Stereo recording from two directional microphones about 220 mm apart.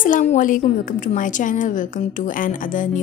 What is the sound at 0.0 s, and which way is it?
A woman's voice, 35° left (ahead or behind).